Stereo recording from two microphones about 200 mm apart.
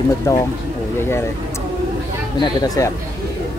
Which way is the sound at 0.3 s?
15° left (ahead or behind).